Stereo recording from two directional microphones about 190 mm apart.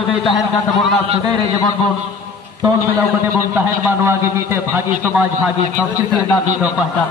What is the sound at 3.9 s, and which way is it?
A man's voice, 15° right (ahead or behind).